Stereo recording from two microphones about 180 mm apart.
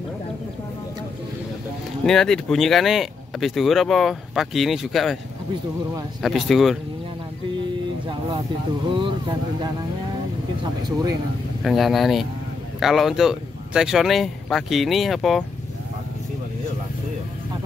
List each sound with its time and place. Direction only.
2.0 s speech: 5° left (ahead or behind)
6.2 s speech: centre (ahead or behind)
8.9 s speech: 25° right (ahead or behind)
11.6 s speech: centre (ahead or behind)